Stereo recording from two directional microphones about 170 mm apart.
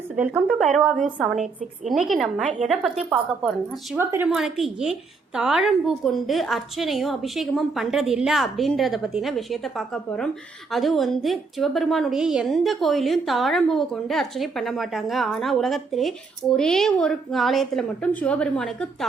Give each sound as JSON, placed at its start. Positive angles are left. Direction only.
{"t": 0.4, "sound": "a woman's voice", "side_deg": 0}
{"t": 2.0, "sound": "a woman's voice", "side_deg": -5}
{"t": 3.9, "sound": "speech", "side_deg": -15}
{"t": 4.3, "sound": "a woman's voice", "side_deg": 0}